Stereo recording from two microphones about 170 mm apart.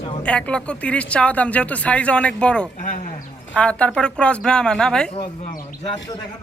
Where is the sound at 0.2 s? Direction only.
5° left (ahead or behind).